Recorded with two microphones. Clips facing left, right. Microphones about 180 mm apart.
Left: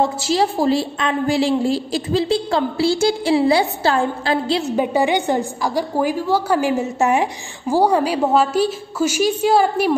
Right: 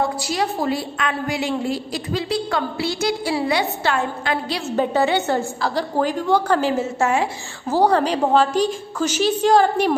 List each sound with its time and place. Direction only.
0.0 s a woman's voice: 25° left (ahead or behind); by 9.9 s 10° left (ahead or behind)